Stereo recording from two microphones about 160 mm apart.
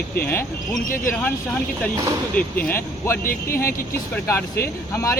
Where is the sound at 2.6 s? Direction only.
15° left (ahead or behind).